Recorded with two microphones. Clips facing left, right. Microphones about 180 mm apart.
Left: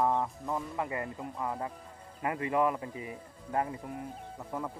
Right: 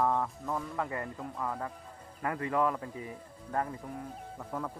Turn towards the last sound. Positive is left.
turn(degrees=15)  # may be behind; listen again after turning